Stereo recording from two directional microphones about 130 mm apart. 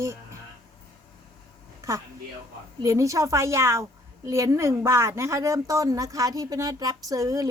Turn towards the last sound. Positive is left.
turn(degrees=-25)  # may be behind; listen again after turning